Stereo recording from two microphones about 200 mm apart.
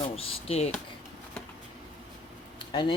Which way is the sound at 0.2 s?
30° left (ahead or behind).